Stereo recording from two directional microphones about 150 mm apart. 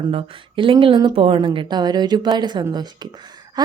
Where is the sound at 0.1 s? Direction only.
35° right (ahead or behind).